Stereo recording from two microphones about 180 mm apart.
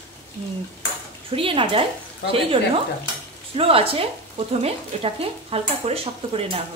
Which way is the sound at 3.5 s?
30° right (ahead or behind).